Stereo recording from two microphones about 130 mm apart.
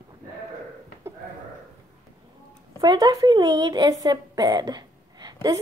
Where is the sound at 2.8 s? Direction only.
35° right (ahead or behind).